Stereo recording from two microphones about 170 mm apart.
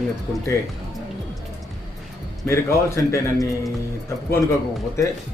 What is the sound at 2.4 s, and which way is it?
Speech, 15° left (ahead or behind).